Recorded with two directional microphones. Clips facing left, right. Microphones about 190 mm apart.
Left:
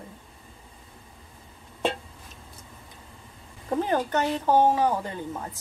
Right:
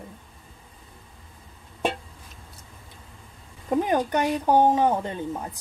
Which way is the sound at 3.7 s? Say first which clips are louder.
Right 2 dB; 15° right (ahead or behind).